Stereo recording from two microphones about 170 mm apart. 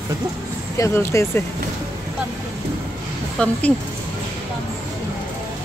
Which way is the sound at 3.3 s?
10° left (ahead or behind).